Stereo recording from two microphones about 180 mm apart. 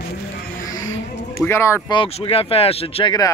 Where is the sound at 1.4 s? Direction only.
15° left (ahead or behind).